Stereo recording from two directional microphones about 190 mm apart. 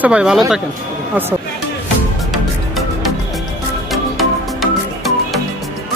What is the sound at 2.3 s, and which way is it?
Music, centre (ahead or behind).